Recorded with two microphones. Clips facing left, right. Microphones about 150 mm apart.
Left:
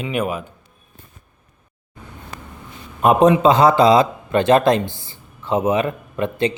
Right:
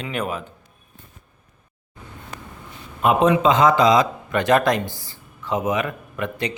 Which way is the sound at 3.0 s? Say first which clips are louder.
Left 4 dB; 40° left (ahead or behind).